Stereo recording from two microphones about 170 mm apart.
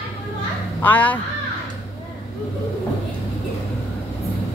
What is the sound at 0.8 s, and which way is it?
Speech, 10° left (ahead or behind).